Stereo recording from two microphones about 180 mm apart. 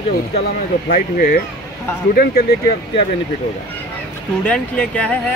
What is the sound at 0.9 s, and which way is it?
Speech, 50° left (ahead or behind).